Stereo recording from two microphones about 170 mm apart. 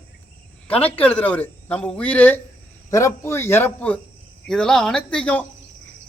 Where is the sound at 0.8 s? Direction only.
10° left (ahead or behind).